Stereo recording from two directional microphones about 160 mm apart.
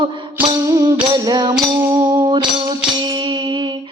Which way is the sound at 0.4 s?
25° right (ahead or behind).